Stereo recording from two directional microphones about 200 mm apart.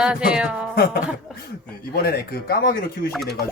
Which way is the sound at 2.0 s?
50° left (ahead or behind).